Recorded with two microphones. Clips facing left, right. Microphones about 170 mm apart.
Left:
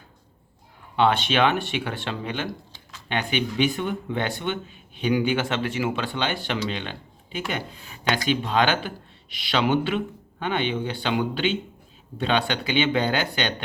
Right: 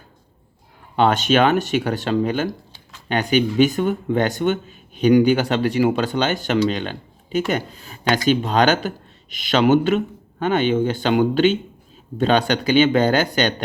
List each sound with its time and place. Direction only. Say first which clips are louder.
0.9 s speech: right 4 dB; 45° right (ahead or behind)